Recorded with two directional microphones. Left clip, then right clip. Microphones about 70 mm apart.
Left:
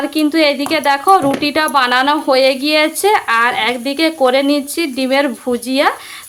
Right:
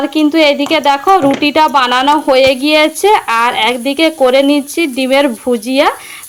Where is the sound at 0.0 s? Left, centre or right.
Right.